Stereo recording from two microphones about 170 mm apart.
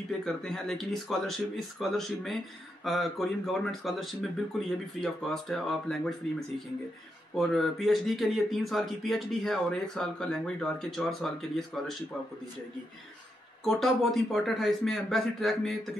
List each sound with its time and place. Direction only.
0.2 s speech: 5° left (ahead or behind)
7.3 s speech: centre (ahead or behind)
13.7 s speech: centre (ahead or behind)